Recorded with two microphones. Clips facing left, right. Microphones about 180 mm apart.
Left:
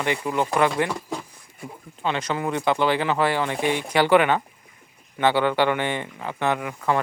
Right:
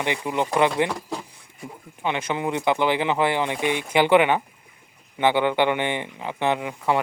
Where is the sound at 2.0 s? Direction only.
15° right (ahead or behind).